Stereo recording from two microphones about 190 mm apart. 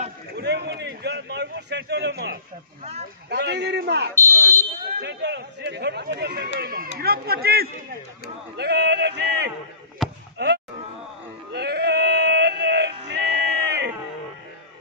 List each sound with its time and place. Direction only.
0.4 s a sound: 60° right (ahead or behind)
3.3 s speech: 60° right (ahead or behind)
4.3 s speech: 15° right (ahead or behind)
5.0 s speech: 65° right (ahead or behind)
10.0 s chop: centre (ahead or behind)
10.3 s fireworks: 60° right (ahead or behind)
11.5 s music: 60° right (ahead or behind)